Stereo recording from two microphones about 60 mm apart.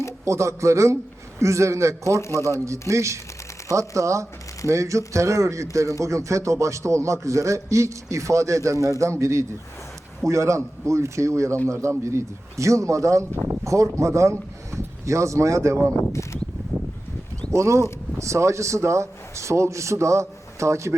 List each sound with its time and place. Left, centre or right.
0.3 s a man's voice: right
2.2 s speech: left
2.9 s a man's voice: right
16.0 s speech: left
17.5 s a man's voice: right